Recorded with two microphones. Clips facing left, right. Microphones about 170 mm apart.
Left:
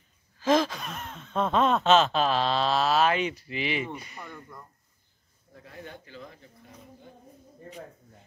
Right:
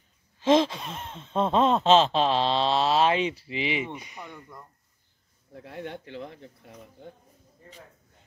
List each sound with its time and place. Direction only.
0.4 s speech: 25° right (ahead or behind); by 4.6 s 5° right (ahead or behind)
5.5 s speech: 70° right (ahead or behind)